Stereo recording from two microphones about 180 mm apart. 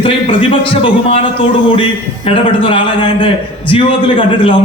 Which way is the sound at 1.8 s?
30° left (ahead or behind).